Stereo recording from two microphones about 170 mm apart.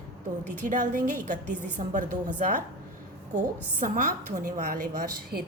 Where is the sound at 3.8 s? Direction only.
55° right (ahead or behind).